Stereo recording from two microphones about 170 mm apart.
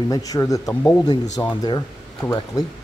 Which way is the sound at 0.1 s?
20° left (ahead or behind).